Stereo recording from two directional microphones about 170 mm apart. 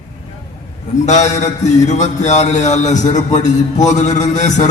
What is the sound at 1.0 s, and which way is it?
A man's voice, 45° left (ahead or behind).